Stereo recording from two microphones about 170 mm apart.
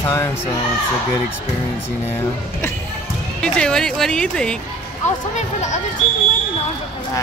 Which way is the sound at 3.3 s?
5° left (ahead or behind).